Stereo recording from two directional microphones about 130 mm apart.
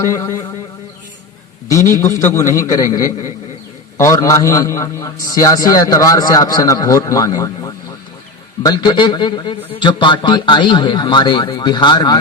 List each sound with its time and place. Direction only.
0.0 s a man's voice: 20° left (ahead or behind)
2.2 s a man's voice: 20° left (ahead or behind)